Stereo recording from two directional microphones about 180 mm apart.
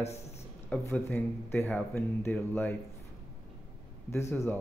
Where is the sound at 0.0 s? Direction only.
35° left (ahead or behind).